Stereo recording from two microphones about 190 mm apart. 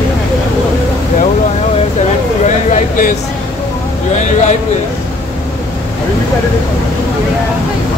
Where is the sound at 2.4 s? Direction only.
40° left (ahead or behind).